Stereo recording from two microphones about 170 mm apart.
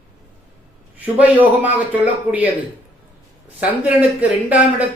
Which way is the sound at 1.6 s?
10° right (ahead or behind).